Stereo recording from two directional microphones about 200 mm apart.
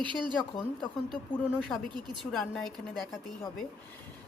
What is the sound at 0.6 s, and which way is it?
A woman's voice, 5° left (ahead or behind).